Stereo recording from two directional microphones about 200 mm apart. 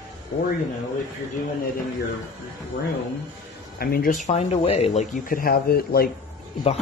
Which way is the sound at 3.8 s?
45° left (ahead or behind).